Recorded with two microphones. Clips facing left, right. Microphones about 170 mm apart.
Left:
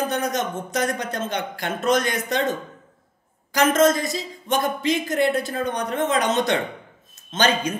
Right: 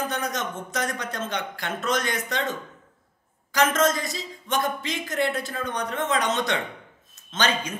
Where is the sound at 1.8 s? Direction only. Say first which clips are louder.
Left 6 dB; 10° left (ahead or behind).